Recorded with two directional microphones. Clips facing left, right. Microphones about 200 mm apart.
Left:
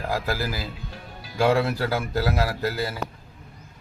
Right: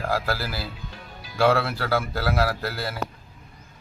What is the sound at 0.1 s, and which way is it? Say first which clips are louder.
Speech: even; 15° left (ahead or behind).